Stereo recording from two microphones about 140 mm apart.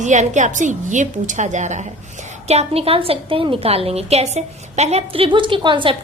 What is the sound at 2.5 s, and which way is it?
A woman's voice, 45° right (ahead or behind).